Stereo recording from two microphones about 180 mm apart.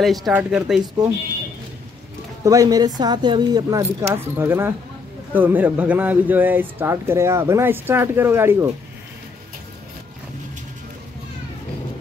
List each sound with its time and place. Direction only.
0.0 s speech: centre (ahead or behind)
2.4 s speech: 20° right (ahead or behind)